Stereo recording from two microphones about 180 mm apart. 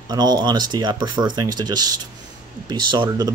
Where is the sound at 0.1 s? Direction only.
20° right (ahead or behind).